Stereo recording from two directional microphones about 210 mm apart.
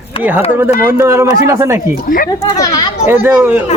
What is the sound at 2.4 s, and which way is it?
Speech, 20° left (ahead or behind).